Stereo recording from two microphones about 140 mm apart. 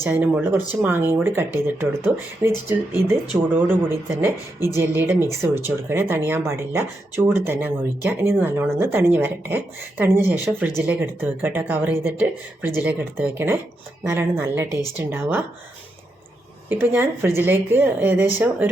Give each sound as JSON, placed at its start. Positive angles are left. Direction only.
{"t": 0.0, "sound": "speech", "side_deg": -10}
{"t": 16.6, "sound": "speech", "side_deg": -15}